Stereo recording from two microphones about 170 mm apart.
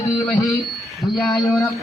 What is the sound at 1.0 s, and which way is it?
Speech, centre (ahead or behind).